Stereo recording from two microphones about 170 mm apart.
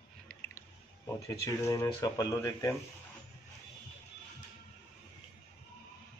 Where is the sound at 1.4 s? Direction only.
15° left (ahead or behind).